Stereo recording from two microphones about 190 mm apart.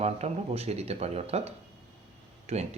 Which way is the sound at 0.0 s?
35° right (ahead or behind).